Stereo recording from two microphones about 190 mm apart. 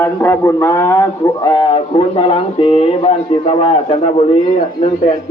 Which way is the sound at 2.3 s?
30° left (ahead or behind).